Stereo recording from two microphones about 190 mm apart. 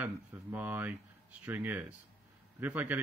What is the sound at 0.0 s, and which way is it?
Speech, 10° right (ahead or behind).